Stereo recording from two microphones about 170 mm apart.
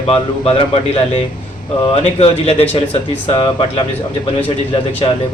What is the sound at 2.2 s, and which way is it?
A man's voice, 35° left (ahead or behind).